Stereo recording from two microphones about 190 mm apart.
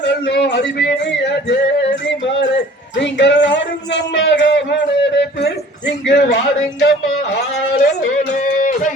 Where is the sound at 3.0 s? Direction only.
70° left (ahead or behind).